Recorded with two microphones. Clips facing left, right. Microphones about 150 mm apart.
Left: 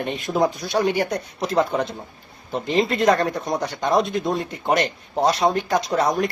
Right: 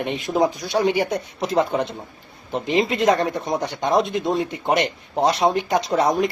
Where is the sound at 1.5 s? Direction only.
Centre (ahead or behind).